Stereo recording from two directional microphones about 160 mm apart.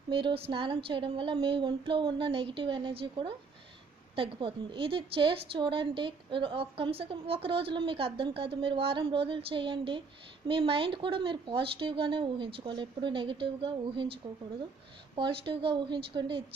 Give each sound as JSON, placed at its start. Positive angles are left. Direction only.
{"t": 0.1, "sound": "a woman's voice", "side_deg": -35}